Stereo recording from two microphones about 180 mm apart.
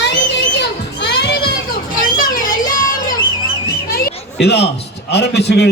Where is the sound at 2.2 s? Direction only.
50° left (ahead or behind).